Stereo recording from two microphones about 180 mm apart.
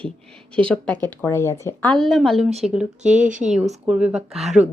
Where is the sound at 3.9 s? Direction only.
5° right (ahead or behind).